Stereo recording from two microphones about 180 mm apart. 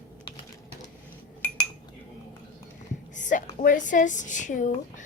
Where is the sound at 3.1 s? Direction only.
45° left (ahead or behind).